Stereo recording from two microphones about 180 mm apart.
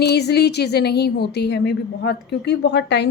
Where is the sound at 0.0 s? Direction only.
65° left (ahead or behind).